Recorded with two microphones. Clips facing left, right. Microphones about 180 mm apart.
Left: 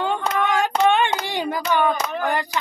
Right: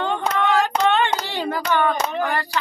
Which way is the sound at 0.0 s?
10° left (ahead or behind).